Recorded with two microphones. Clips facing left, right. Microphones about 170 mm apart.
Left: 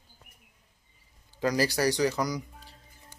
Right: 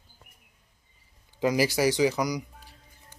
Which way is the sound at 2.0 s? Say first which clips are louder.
Right 2 dB; centre (ahead or behind).